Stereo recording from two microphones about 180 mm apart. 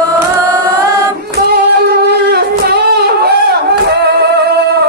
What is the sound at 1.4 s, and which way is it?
Singing, 60° right (ahead or behind).